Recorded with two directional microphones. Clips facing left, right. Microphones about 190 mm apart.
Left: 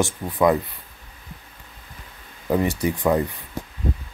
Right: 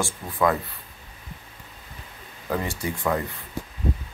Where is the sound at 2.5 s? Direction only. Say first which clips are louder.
Left 7 dB; 20° left (ahead or behind).